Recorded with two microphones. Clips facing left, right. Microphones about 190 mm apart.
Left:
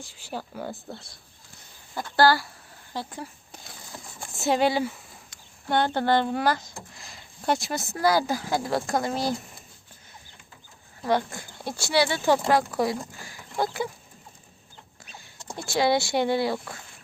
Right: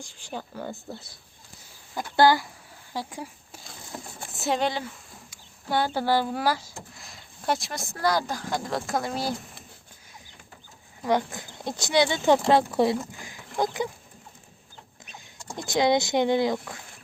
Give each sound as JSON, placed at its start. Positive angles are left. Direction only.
{"t": 0.0, "sound": "speech", "side_deg": 5}
{"t": 2.0, "sound": "speech", "side_deg": -15}
{"t": 4.4, "sound": "speech", "side_deg": 0}
{"t": 5.3, "sound": "speech", "side_deg": -5}
{"t": 11.0, "sound": "speech", "side_deg": -15}
{"t": 15.5, "sound": "speech", "side_deg": -20}